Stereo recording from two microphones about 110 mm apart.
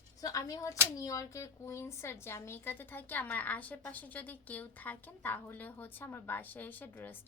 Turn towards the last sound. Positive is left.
turn(degrees=15)  # may be behind; listen again after turning